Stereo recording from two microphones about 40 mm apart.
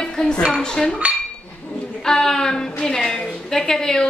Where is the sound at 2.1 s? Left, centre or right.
Centre.